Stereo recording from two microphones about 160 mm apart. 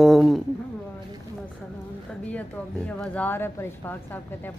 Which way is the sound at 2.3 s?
10° left (ahead or behind).